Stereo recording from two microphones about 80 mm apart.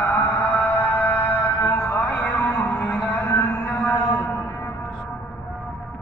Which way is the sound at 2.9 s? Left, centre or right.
Left.